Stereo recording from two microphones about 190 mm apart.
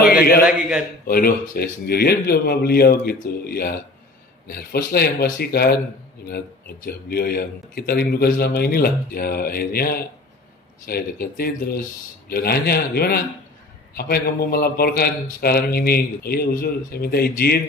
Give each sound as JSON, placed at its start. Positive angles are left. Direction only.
{"t": 0.5, "sound": "a man's voice", "side_deg": -5}
{"t": 1.0, "sound": "a man's voice", "side_deg": 50}
{"t": 6.9, "sound": "a man's voice", "side_deg": 55}